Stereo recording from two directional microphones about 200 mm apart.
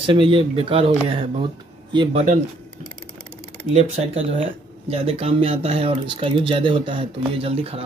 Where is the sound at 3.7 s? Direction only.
30° right (ahead or behind).